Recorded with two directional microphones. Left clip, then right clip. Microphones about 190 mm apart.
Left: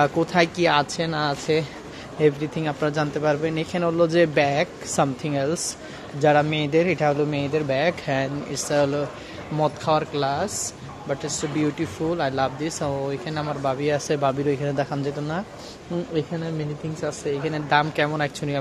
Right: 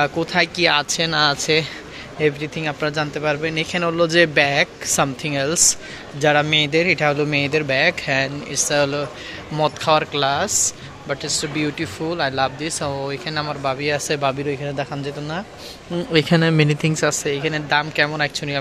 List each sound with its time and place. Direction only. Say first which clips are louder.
0.0 s speech: right 1 dB; 15° left (ahead or behind)
7.2 s speech: right 4 dB; 10° right (ahead or behind)
7.6 s speech: right 4 dB; 10° left (ahead or behind)
16.3 s speech: right 13 dB; 35° right (ahead or behind)
17.2 s speech: right 4 dB; 5° right (ahead or behind); by 18.6 s 10° left (ahead or behind)